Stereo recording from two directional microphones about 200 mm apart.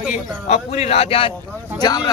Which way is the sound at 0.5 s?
30° left (ahead or behind).